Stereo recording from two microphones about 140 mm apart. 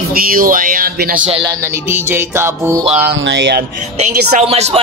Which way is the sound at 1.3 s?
35° right (ahead or behind).